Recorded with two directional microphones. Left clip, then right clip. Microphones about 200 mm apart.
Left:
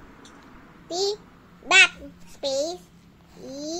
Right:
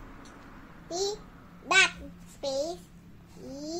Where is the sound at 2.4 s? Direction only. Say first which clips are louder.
Left 5 dB; 15° left (ahead or behind).